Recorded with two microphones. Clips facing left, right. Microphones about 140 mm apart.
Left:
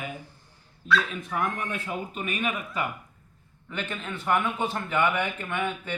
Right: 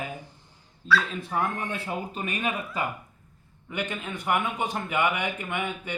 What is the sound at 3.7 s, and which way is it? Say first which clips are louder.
A man's voice: right 2 dB; 15° right (ahead or behind).